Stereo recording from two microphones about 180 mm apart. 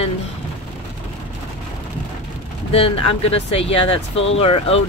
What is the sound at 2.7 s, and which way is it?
Speech, 30° left (ahead or behind).